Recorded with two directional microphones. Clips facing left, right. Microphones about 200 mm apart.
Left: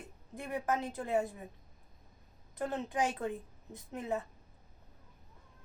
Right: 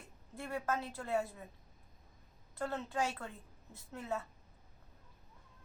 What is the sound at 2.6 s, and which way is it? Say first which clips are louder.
A woman's voice: left 3 dB; 15° left (ahead or behind).